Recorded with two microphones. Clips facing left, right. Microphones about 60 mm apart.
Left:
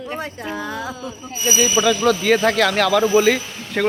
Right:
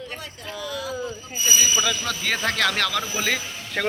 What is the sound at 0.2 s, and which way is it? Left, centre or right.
Speech, left.